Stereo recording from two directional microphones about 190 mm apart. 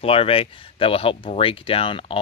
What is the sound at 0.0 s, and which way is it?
Speech, 30° left (ahead or behind).